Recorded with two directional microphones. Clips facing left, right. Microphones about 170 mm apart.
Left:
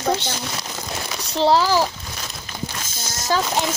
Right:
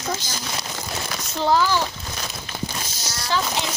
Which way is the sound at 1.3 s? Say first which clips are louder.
Left 3 dB; 30° left (ahead or behind).